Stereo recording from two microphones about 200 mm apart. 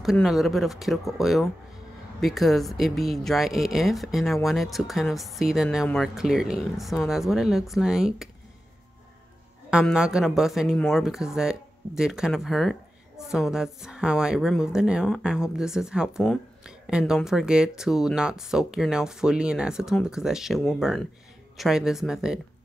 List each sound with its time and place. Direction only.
0.0 s a woman's voice: centre (ahead or behind)
9.7 s a woman's voice: 5° right (ahead or behind)